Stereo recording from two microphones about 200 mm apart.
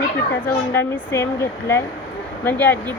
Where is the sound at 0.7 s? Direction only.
10° left (ahead or behind).